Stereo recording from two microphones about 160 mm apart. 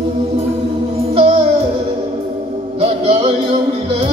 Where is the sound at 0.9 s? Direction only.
35° right (ahead or behind).